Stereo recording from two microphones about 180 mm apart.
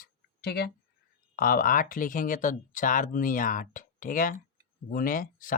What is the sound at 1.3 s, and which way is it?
Speech, 50° left (ahead or behind).